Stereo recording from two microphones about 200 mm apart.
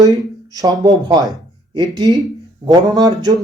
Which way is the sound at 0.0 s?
20° right (ahead or behind).